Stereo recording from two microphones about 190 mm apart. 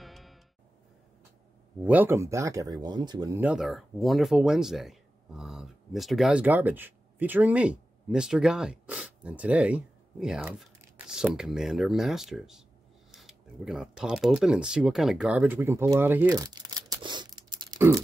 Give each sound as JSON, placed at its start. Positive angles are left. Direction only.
{"t": 0.0, "sound": "music", "side_deg": 0}
{"t": 1.8, "sound": "speech", "side_deg": -10}
{"t": 3.3, "sound": "speech", "side_deg": -5}